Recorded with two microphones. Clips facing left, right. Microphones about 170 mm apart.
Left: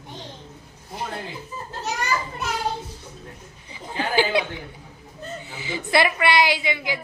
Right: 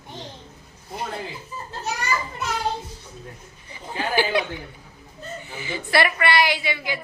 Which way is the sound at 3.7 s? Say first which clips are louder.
Left 1 dB; 15° left (ahead or behind).